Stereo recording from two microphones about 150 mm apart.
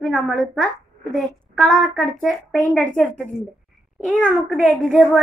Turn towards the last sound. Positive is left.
turn(degrees=10)  # may be behind; listen again after turning